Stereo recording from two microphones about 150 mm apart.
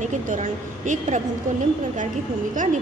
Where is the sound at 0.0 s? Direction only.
55° right (ahead or behind).